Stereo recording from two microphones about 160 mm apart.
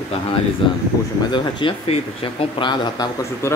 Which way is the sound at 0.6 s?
30° left (ahead or behind).